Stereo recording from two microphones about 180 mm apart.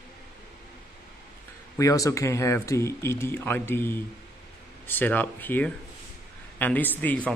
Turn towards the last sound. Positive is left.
turn(degrees=10)  # may be behind; listen again after turning